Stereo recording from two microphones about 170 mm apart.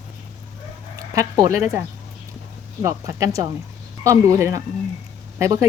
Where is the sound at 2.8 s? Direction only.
20° right (ahead or behind).